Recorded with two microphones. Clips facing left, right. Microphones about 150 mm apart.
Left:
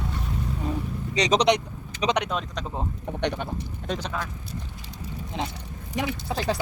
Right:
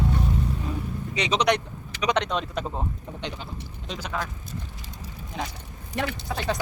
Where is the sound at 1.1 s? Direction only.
35° left (ahead or behind).